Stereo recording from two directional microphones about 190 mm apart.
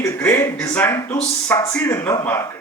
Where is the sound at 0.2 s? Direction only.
10° left (ahead or behind).